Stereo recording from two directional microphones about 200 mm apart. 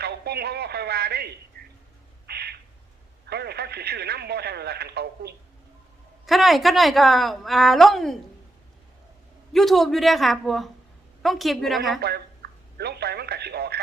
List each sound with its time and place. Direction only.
0.0 s speech: 55° right (ahead or behind)
2.2 s a sound: 55° right (ahead or behind)
3.2 s speech: 55° right (ahead or behind)
6.2 s a woman's voice: centre (ahead or behind)
9.5 s a woman's voice: centre (ahead or behind)
11.9 s speech: 55° right (ahead or behind)